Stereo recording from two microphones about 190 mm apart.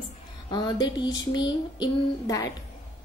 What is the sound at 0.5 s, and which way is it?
A woman's voice, 20° left (ahead or behind).